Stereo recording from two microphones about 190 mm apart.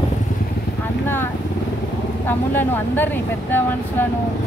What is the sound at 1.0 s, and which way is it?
Vehicle, 10° left (ahead or behind).